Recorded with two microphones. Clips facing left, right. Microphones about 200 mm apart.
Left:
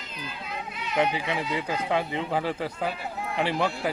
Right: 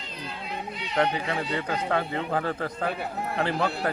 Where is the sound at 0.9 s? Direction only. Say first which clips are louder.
Even; 10° left (ahead or behind).